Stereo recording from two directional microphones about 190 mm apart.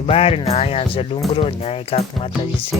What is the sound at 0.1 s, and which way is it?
Speech, 30° left (ahead or behind).